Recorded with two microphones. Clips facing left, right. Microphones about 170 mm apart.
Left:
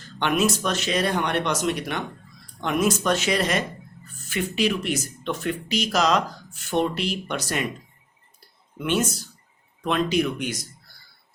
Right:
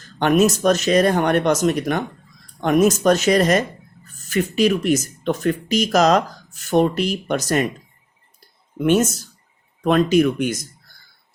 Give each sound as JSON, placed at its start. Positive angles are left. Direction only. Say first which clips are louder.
{"t": 0.2, "sound": "speech", "louder": "right 7 dB", "side_deg": -45}
{"t": 8.8, "sound": "speech", "louder": "right 7 dB", "side_deg": -45}